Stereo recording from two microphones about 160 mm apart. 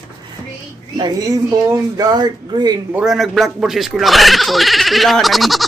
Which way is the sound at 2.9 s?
Centre (ahead or behind).